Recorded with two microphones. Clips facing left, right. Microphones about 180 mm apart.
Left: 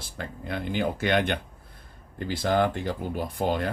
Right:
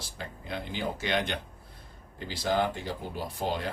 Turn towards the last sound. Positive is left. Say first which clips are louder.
# left 5 dB
turn(degrees=55)  # may be behind; listen again after turning